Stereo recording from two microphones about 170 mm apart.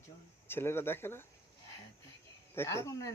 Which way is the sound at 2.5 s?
15° left (ahead or behind).